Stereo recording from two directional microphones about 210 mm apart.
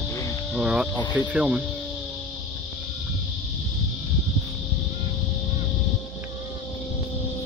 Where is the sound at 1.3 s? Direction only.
5° right (ahead or behind).